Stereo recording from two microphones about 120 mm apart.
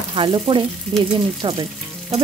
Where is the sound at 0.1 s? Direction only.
45° right (ahead or behind).